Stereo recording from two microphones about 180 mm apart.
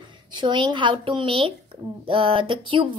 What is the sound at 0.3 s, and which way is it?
A woman's voice, 25° right (ahead or behind).